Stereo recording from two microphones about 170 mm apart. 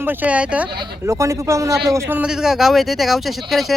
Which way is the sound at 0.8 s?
20° right (ahead or behind).